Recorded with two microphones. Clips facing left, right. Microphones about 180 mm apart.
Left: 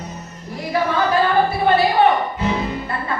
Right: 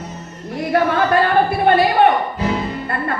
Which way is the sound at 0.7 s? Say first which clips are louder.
Right 3 dB; 55° right (ahead or behind).